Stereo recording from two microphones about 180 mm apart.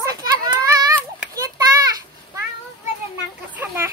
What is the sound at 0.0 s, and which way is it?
Children playing, 20° right (ahead or behind).